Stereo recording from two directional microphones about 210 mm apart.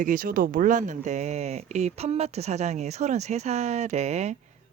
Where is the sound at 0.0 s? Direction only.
40° right (ahead or behind).